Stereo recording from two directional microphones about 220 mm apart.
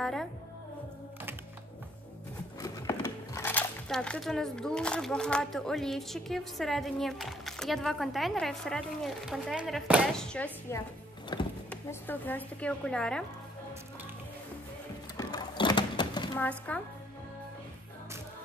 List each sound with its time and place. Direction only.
0.0 s music: centre (ahead or behind)
2.6 s speech: 15° left (ahead or behind)
11.3 s speech: 20° left (ahead or behind)
11.7 s speech: 10° left (ahead or behind)
15.1 s mechanisms: 20° left (ahead or behind)
16.3 s speech: 5° left (ahead or behind)